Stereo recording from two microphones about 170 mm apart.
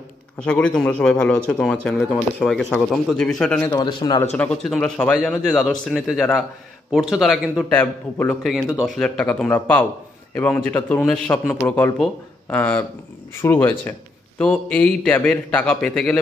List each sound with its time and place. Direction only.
0.5 s speech: 5° left (ahead or behind)
3.7 s speech: 25° left (ahead or behind)
4.4 s speech: 5° left (ahead or behind)
7.7 s a man's voice: 10° left (ahead or behind)
8.4 s a man's voice: centre (ahead or behind)